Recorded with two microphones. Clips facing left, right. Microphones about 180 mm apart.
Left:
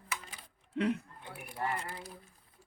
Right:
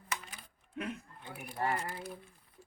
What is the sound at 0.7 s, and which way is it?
Speech, 70° left (ahead or behind).